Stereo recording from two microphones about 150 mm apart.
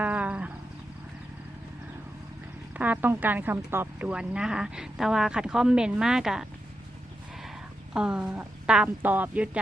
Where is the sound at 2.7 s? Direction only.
10° right (ahead or behind).